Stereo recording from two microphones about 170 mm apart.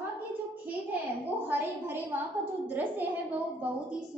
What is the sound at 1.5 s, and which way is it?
A woman's voice, 10° right (ahead or behind).